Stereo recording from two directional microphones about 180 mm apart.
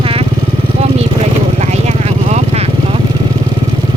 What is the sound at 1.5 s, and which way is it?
Vehicle, 40° right (ahead or behind).